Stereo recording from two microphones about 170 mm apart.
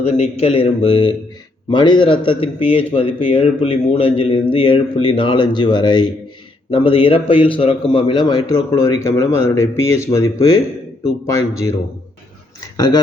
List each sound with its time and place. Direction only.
0.0 s a man's voice: 40° left (ahead or behind); by 11.7 s 20° left (ahead or behind)
12.7 s speech: 25° left (ahead or behind)